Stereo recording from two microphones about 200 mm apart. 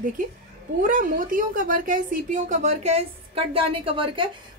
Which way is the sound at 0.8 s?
45° right (ahead or behind).